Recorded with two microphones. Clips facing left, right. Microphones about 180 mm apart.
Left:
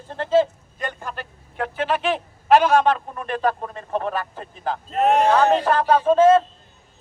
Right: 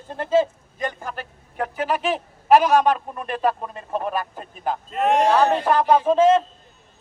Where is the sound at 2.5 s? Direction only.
5° right (ahead or behind).